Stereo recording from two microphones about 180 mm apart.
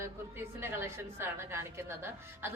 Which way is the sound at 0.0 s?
15° right (ahead or behind).